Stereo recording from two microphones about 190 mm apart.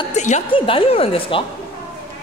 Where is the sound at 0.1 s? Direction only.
35° left (ahead or behind).